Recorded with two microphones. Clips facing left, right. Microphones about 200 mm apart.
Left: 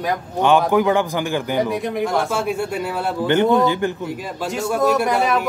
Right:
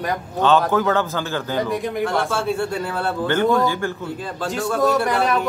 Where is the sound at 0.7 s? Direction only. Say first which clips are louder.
Left 3 dB; 15° left (ahead or behind).